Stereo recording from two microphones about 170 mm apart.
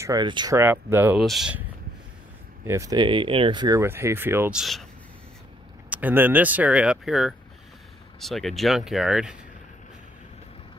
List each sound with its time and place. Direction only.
0.0 s speech: 25° right (ahead or behind)
1.2 s speech: centre (ahead or behind)
2.6 s speech: 15° right (ahead or behind)
3.8 s speech: 15° right (ahead or behind)
4.6 s speech: centre (ahead or behind)
5.9 s speech: 10° right (ahead or behind)